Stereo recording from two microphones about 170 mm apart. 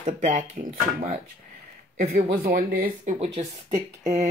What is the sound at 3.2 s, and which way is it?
Speech, 40° right (ahead or behind).